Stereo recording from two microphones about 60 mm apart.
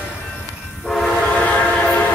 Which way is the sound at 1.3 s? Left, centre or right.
Left.